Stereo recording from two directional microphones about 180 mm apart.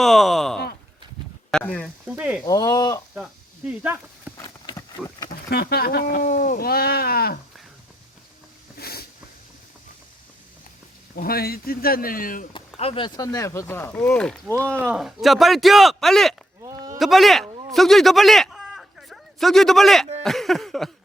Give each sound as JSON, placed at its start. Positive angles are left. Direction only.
{"t": 0.0, "sound": "a man's voice", "side_deg": 0}
{"t": 2.1, "sound": "speech", "side_deg": -5}
{"t": 2.4, "sound": "speech", "side_deg": 20}
{"t": 3.2, "sound": "speech", "side_deg": -5}
{"t": 4.4, "sound": "horse", "side_deg": 25}
{"t": 5.5, "sound": "speech", "side_deg": 60}
{"t": 8.8, "sound": "a sound", "side_deg": 60}
{"t": 11.2, "sound": "speech", "side_deg": 55}
{"t": 12.5, "sound": "a man's voice", "side_deg": 30}
{"t": 16.6, "sound": "a sound", "side_deg": -20}
{"t": 17.0, "sound": "a man's voice", "side_deg": 0}